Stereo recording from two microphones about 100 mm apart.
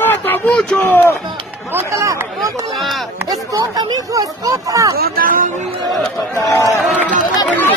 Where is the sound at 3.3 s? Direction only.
40° right (ahead or behind).